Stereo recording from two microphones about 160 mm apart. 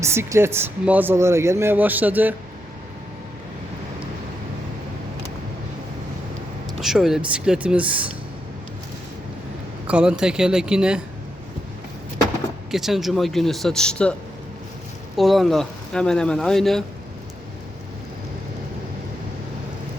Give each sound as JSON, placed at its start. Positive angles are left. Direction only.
{"t": 0.0, "sound": "speech", "side_deg": -15}
{"t": 6.7, "sound": "speech", "side_deg": -5}
{"t": 9.8, "sound": "speech", "side_deg": -5}
{"t": 12.7, "sound": "speech", "side_deg": 0}